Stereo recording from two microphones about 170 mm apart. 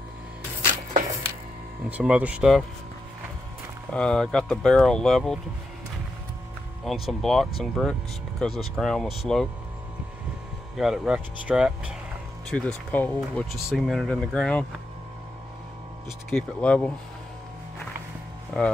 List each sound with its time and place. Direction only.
1.9 s speech: 10° right (ahead or behind)
3.9 s speech: 5° left (ahead or behind)
6.9 s speech: centre (ahead or behind)
10.8 s speech: 5° right (ahead or behind)
12.4 s speech: 5° left (ahead or behind)
16.3 s speech: 5° left (ahead or behind)
18.5 s speech: 5° left (ahead or behind)